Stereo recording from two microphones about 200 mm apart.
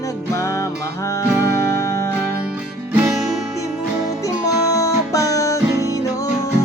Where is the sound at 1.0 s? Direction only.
15° left (ahead or behind).